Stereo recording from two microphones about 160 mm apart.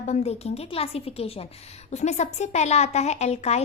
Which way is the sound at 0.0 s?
45° left (ahead or behind).